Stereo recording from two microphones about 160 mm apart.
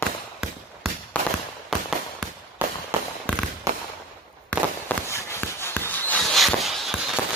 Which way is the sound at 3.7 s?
20° right (ahead or behind).